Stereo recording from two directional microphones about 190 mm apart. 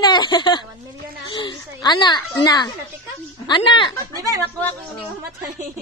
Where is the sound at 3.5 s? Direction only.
25° left (ahead or behind).